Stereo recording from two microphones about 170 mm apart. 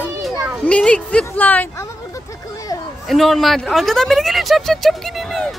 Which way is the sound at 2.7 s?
20° left (ahead or behind).